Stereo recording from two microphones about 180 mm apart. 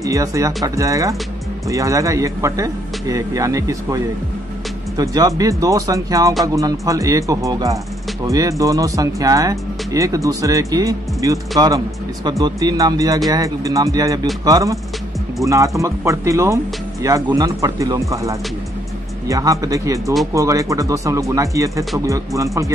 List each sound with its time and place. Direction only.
0.0 s speech: 20° right (ahead or behind)